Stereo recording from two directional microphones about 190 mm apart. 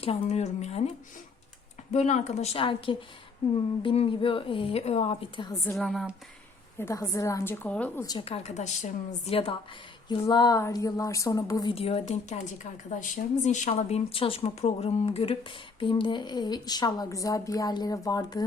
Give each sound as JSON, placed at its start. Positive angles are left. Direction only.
{"t": 0.0, "sound": "a woman's voice", "side_deg": 35}
{"t": 1.9, "sound": "a woman's voice", "side_deg": 40}
{"t": 5.7, "sound": "speech", "side_deg": 0}
{"t": 6.7, "sound": "a woman's voice", "side_deg": 15}
{"t": 8.0, "sound": "a woman's voice", "side_deg": 25}
{"t": 11.7, "sound": "a woman's voice", "side_deg": 30}